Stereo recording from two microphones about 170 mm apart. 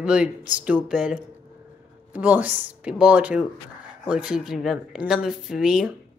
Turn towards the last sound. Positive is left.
turn(degrees=-5)  # may be behind; listen again after turning